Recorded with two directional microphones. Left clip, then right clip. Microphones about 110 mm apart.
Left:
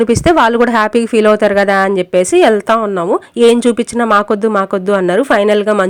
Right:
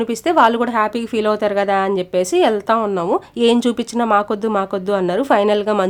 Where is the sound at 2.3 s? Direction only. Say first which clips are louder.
Left 5 dB; 35° left (ahead or behind).